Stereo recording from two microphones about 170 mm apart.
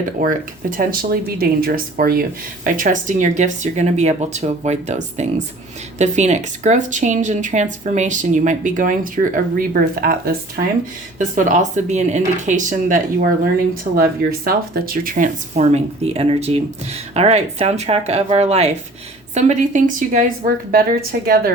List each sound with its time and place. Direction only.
0.2 s speech: 55° right (ahead or behind)
6.0 s speech: 40° right (ahead or behind); by 10.3 s 60° right (ahead or behind)
11.3 s speech: 50° right (ahead or behind)
13.9 s speech: 60° right (ahead or behind)